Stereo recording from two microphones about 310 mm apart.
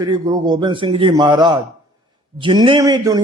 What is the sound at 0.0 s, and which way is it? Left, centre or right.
A man's voice, centre.